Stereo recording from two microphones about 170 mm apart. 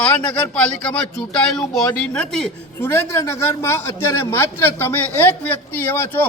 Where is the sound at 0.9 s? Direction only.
5° left (ahead or behind).